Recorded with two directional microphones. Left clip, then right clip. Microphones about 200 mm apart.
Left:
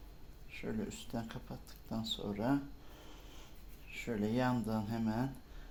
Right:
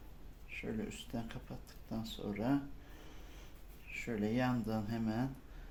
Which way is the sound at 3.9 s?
15° left (ahead or behind).